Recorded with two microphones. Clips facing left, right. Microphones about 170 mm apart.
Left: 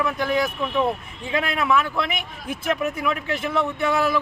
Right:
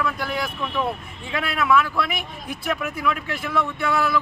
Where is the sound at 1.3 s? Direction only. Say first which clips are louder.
Right 1 dB; 20° left (ahead or behind).